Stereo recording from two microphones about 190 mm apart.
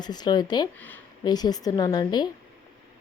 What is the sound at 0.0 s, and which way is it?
Speech, 20° left (ahead or behind).